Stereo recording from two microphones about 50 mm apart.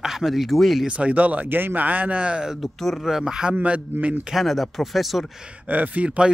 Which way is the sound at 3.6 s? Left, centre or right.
Right.